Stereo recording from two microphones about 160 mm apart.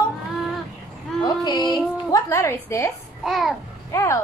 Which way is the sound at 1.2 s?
25° left (ahead or behind).